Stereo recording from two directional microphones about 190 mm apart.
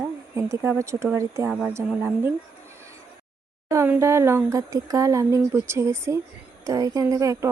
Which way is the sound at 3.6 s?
15° right (ahead or behind).